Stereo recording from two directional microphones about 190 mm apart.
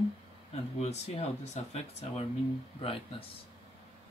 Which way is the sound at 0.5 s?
35° left (ahead or behind).